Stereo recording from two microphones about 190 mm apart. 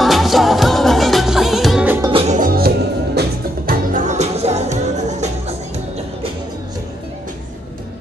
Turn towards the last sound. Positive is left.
turn(degrees=-35)  # may be behind; listen again after turning